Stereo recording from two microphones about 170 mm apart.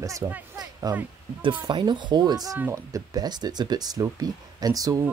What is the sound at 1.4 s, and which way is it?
Speech, 30° right (ahead or behind).